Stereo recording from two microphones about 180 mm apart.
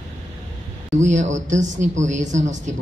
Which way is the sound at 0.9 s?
40° right (ahead or behind).